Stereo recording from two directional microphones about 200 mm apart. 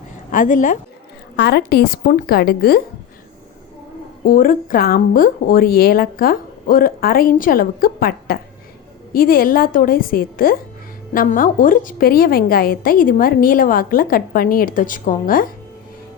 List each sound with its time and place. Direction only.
0.3 s a woman's voice: 40° left (ahead or behind)
1.4 s a woman's voice: 55° left (ahead or behind)
4.3 s a woman's voice: 45° left (ahead or behind)